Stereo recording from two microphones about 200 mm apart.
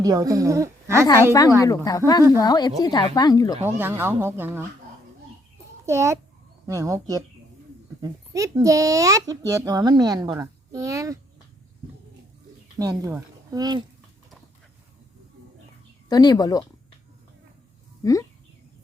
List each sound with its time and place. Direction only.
0.0 s a woman's voice: 15° right (ahead or behind)
1.0 s a woman's voice: 15° left (ahead or behind)
3.6 s a woman's voice: 10° right (ahead or behind)
5.8 s a child's voice: 15° right (ahead or behind)
12.8 s speech: 15° right (ahead or behind)
16.0 s speech: 20° left (ahead or behind)
18.0 s speech: 15° left (ahead or behind)